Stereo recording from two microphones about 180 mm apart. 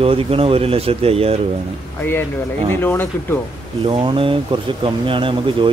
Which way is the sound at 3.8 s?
30° right (ahead or behind).